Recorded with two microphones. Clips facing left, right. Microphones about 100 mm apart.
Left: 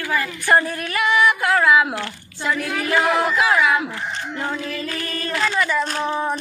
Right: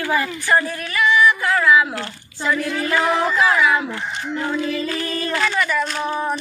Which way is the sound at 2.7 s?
75° left (ahead or behind).